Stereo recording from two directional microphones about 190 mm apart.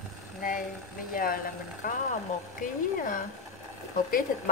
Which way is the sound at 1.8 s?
45° left (ahead or behind).